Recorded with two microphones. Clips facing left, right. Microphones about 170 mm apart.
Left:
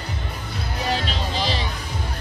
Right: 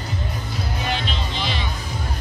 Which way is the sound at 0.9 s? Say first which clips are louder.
Left 4 dB; 35° left (ahead or behind).